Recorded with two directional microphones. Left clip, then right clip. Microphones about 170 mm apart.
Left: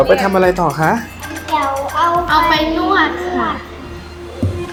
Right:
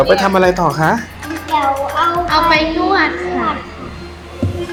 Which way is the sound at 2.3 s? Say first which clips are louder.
Even; 10° right (ahead or behind).